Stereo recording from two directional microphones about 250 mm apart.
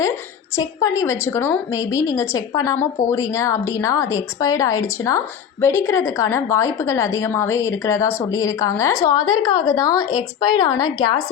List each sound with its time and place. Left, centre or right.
0.5 s a woman's voice: centre